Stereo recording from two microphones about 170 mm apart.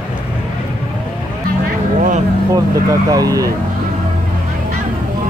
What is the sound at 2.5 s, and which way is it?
Speech, 20° right (ahead or behind).